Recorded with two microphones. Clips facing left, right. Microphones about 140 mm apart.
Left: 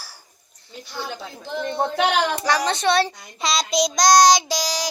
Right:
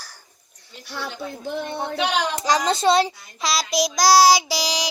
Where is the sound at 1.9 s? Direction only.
55° left (ahead or behind).